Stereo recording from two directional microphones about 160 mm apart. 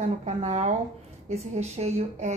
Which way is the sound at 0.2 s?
45° right (ahead or behind).